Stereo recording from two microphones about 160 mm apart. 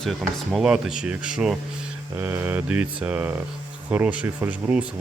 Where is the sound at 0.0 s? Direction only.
Centre (ahead or behind).